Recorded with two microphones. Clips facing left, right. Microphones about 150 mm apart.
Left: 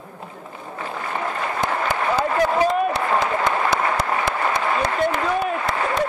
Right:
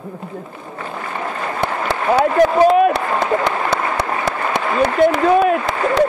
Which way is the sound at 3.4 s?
70° right (ahead or behind).